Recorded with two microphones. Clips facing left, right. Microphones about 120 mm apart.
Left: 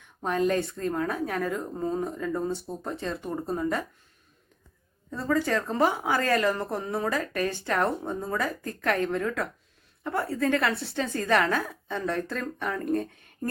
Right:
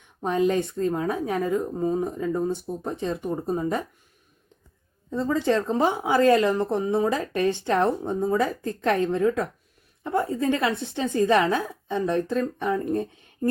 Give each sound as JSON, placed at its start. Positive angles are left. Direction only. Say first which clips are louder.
{"t": 0.2, "sound": "a woman's voice", "louder": "right 3 dB", "side_deg": -15}
{"t": 5.1, "sound": "a woman's voice", "louder": "right 3 dB", "side_deg": -20}